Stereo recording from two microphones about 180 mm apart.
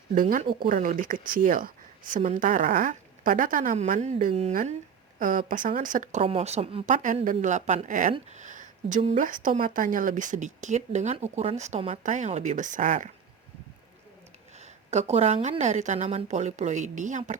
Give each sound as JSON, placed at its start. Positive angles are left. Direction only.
{"t": 0.1, "sound": "speech", "side_deg": -50}
{"t": 4.3, "sound": "a woman's voice", "side_deg": -35}
{"t": 6.9, "sound": "speech", "side_deg": -45}
{"t": 14.6, "sound": "a woman's voice", "side_deg": -40}